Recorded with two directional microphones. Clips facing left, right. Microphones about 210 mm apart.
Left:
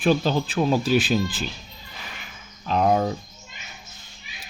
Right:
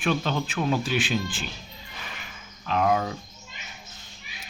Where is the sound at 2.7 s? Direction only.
35° left (ahead or behind).